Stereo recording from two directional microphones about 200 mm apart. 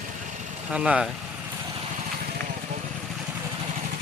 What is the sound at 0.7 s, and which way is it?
Speech, 5° right (ahead or behind).